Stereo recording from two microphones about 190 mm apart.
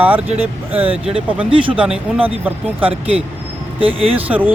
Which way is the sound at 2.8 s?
30° right (ahead or behind).